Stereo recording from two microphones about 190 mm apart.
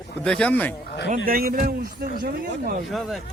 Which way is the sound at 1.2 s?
50° right (ahead or behind).